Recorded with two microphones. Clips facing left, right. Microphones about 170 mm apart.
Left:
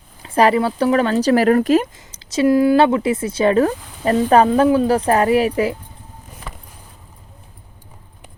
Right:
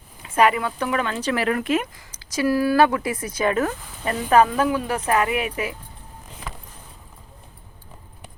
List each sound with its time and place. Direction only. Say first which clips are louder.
0.2 s speech: left 4 dB; 35° left (ahead or behind)
2.0 s speech: left 6 dB; 25° left (ahead or behind)